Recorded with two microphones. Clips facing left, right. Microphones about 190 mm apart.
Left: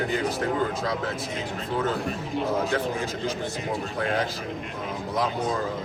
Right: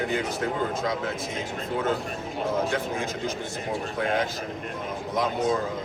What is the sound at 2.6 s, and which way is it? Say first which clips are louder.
Speech: left 1 dB; 35° left (ahead or behind).